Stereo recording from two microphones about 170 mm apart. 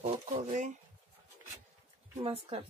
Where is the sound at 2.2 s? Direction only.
35° right (ahead or behind).